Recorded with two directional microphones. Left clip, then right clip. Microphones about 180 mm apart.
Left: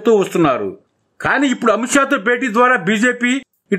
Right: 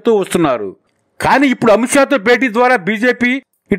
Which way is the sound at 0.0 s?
30° right (ahead or behind).